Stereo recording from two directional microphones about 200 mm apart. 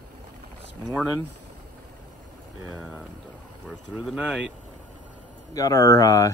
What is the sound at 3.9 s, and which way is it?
Speech, 5° right (ahead or behind).